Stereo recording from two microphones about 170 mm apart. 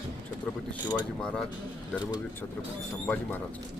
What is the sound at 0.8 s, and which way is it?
Speech, 25° left (ahead or behind).